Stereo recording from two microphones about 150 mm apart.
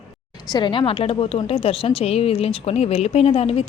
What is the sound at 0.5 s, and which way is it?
A woman's voice, 30° left (ahead or behind).